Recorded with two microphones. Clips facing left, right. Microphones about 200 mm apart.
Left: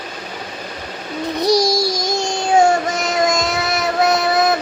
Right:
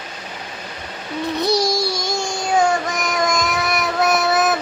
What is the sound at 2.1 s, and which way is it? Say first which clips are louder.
Child singing: left 3 dB; 20° left (ahead or behind).